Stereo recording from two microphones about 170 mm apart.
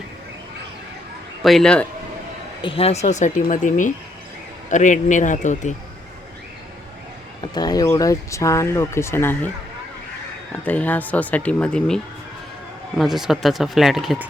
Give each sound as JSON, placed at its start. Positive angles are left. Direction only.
{"t": 1.4, "sound": "speech", "side_deg": 0}
{"t": 2.6, "sound": "speech", "side_deg": 30}
{"t": 7.4, "sound": "speech", "side_deg": 25}
{"t": 10.5, "sound": "speech", "side_deg": 10}
{"t": 13.0, "sound": "speech", "side_deg": 0}